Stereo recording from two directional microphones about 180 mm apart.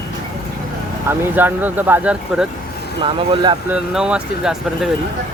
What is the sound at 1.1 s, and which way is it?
Speech, 10° right (ahead or behind).